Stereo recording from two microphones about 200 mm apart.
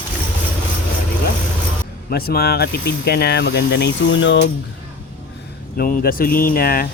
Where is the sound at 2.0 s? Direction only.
50° left (ahead or behind); by 4.4 s 65° left (ahead or behind).